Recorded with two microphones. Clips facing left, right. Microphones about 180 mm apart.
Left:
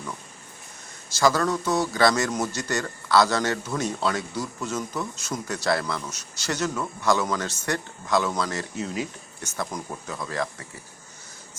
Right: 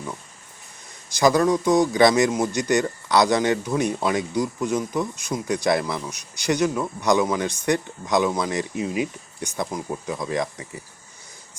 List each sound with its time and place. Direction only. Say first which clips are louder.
1.1 s a man's voice: right 4 dB; 15° right (ahead or behind)